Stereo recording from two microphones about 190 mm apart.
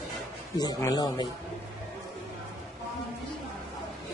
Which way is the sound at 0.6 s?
20° left (ahead or behind).